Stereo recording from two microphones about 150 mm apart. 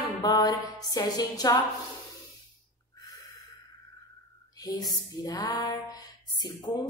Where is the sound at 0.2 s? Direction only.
25° left (ahead or behind).